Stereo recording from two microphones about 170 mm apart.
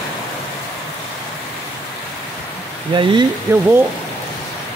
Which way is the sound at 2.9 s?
30° right (ahead or behind).